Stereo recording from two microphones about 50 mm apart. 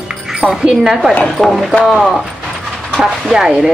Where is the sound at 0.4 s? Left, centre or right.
Centre.